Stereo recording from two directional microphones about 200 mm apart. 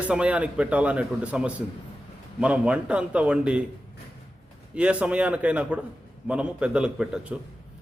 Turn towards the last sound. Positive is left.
turn(degrees=-5)  # may be behind; listen again after turning